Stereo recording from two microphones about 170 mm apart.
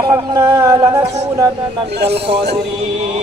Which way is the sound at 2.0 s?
75° right (ahead or behind).